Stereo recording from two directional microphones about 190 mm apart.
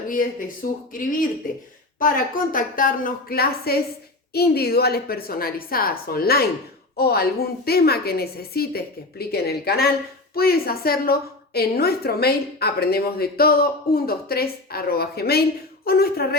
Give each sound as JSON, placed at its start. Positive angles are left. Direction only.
{"t": 0.1, "sound": "a woman's voice", "side_deg": 45}